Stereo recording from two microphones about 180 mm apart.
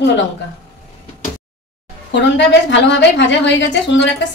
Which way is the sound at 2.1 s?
75° left (ahead or behind).